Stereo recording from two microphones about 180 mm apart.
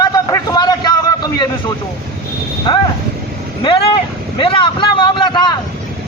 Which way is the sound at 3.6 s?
30° left (ahead or behind).